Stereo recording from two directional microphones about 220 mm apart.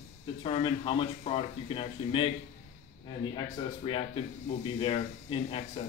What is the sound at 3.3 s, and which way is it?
A man's voice, 25° left (ahead or behind).